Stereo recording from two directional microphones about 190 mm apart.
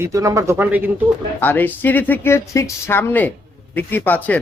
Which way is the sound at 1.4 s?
10° left (ahead or behind).